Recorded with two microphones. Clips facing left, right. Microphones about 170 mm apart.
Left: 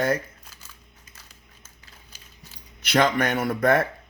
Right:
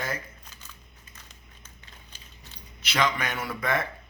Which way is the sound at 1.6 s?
5° left (ahead or behind).